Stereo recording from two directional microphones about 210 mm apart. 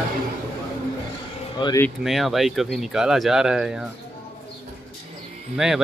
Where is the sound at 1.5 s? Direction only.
20° left (ahead or behind).